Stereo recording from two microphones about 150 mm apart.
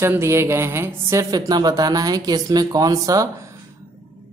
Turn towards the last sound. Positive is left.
turn(degrees=-25)  # may be behind; listen again after turning